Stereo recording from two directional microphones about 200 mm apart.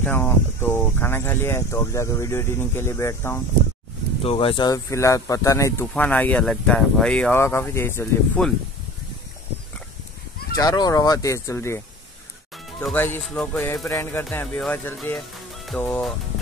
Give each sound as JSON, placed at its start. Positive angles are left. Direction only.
{"t": 0.0, "sound": "speech", "side_deg": 10}
{"t": 4.2, "sound": "speech", "side_deg": 25}
{"t": 10.6, "sound": "speech", "side_deg": 20}
{"t": 12.8, "sound": "speech", "side_deg": 10}